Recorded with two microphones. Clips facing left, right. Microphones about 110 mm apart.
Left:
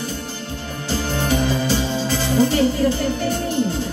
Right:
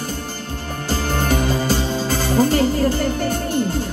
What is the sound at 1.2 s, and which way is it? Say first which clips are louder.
Music: left 1 dB; 45° right (ahead or behind).